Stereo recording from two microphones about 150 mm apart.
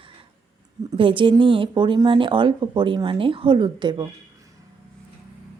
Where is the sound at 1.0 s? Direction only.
35° right (ahead or behind).